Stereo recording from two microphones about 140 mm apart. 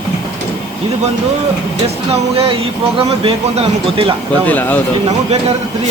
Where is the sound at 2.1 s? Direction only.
45° right (ahead or behind).